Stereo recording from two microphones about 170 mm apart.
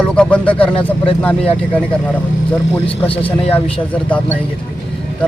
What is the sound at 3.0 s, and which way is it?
Speech, 35° left (ahead or behind).